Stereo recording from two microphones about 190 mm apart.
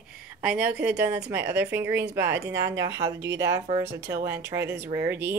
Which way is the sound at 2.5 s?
70° right (ahead or behind).